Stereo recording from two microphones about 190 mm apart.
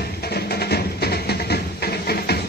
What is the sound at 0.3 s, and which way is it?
Music, 55° left (ahead or behind).